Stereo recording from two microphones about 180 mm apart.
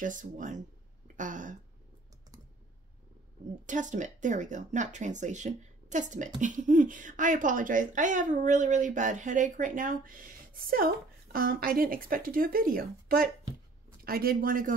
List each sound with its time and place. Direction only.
0.0 s speech: 45° right (ahead or behind)
3.6 s speech: 45° right (ahead or behind)